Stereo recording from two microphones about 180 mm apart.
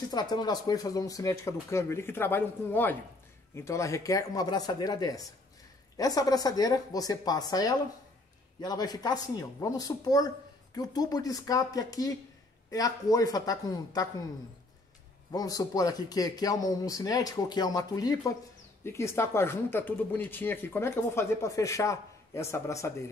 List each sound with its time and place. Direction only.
0.1 s speech: 25° left (ahead or behind)
15.3 s speech: 20° left (ahead or behind)